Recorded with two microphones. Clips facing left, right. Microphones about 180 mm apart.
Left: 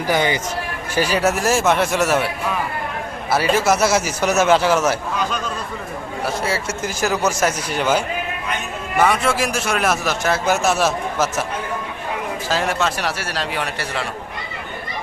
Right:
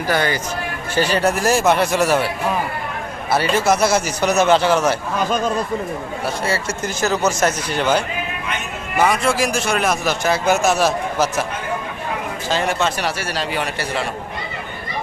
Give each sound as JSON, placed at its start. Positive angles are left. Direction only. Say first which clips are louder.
{"t": 0.1, "sound": "a man's voice", "louder": "left 1 dB", "side_deg": 15}
{"t": 3.3, "sound": "a man's voice", "louder": "even", "side_deg": 5}
{"t": 6.2, "sound": "a man's voice", "louder": "even", "side_deg": 5}
{"t": 12.5, "sound": "a man's voice", "louder": "right 1 dB", "side_deg": 0}